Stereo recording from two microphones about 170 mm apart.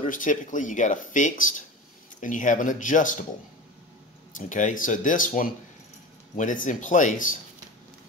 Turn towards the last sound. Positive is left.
turn(degrees=50)  # may be behind; listen again after turning